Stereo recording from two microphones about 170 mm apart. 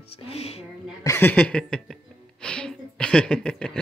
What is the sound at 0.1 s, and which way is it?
Speech, 35° left (ahead or behind).